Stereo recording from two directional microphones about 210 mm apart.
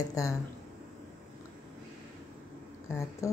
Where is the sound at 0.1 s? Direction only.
15° left (ahead or behind).